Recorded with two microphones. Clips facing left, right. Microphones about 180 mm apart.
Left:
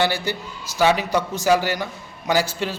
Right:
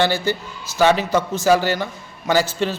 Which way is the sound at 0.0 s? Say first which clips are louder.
Right 3 dB; 10° left (ahead or behind).